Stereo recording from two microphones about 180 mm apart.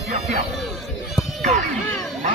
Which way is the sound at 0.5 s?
Centre (ahead or behind).